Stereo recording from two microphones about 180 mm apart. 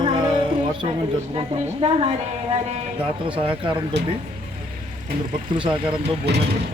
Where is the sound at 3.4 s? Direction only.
30° right (ahead or behind).